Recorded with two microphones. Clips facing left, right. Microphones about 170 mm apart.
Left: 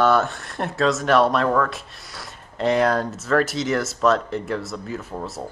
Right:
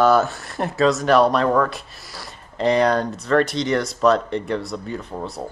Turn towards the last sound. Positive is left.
turn(degrees=0)  # may be behind; listen again after turning